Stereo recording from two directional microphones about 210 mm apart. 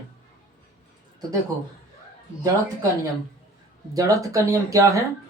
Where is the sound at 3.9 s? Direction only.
15° right (ahead or behind).